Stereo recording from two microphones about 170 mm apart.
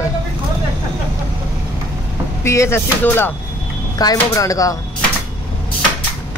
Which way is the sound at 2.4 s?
15° left (ahead or behind).